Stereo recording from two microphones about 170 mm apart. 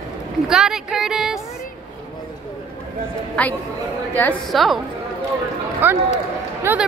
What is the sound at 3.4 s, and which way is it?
A woman's voice, 5° left (ahead or behind).